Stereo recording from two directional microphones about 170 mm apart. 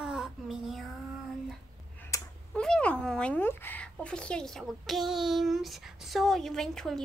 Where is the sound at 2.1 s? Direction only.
20° left (ahead or behind).